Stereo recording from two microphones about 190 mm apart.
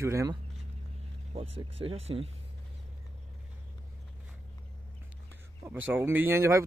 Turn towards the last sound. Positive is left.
turn(degrees=-15)  # may be behind; listen again after turning